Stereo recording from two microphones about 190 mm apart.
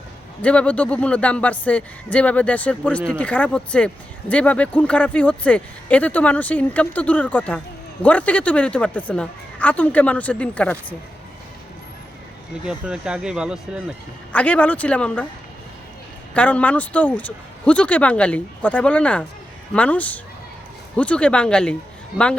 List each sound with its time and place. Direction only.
0.4 s speech: 5° left (ahead or behind)
12.6 s speech: 5° right (ahead or behind)
14.3 s speech: 5° left (ahead or behind)
16.3 s speech: 5° left (ahead or behind)